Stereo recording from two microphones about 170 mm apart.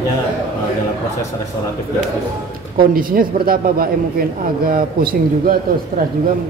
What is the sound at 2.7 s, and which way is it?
Speech, 60° right (ahead or behind).